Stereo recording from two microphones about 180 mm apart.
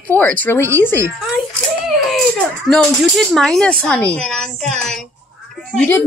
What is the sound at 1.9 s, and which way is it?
Baby cry, centre (ahead or behind).